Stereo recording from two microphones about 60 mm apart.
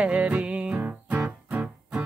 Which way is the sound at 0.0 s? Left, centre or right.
Centre.